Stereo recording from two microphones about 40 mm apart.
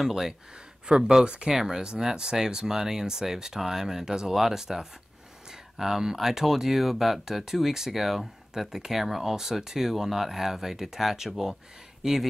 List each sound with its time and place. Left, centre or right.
0.0 s speech: centre; by 1.5 s right
1.5 s speech: centre